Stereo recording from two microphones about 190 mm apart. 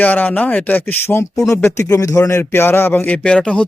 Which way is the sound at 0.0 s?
10° left (ahead or behind).